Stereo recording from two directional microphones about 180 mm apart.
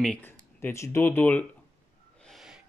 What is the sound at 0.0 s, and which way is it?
Speech, 10° left (ahead or behind).